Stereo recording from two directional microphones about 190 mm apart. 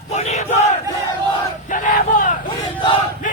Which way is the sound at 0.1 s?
35° left (ahead or behind).